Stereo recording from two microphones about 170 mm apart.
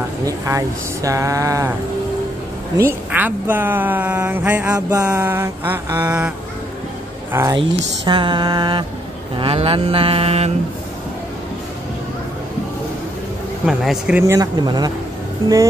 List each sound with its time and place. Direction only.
0.2 s speech: 20° right (ahead or behind)
2.8 s speech: 10° right (ahead or behind)
7.5 s speech: 30° right (ahead or behind)
9.4 s mantra: 35° right (ahead or behind)
13.7 s speech: 5° right (ahead or behind)
14.2 s speech: 20° right (ahead or behind)